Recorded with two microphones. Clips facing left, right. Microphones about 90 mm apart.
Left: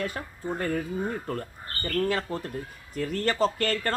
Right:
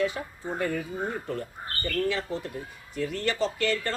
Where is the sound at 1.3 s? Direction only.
45° left (ahead or behind).